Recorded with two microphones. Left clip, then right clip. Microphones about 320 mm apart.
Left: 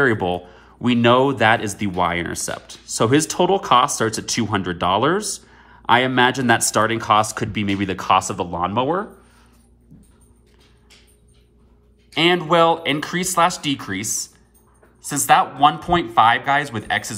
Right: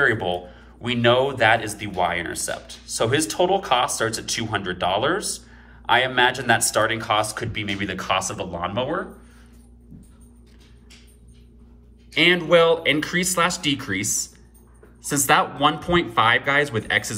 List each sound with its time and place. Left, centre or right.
0.0 s speech: centre
12.1 s speech: centre